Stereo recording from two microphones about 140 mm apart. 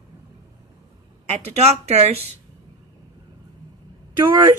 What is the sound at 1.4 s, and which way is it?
Speech, 50° right (ahead or behind).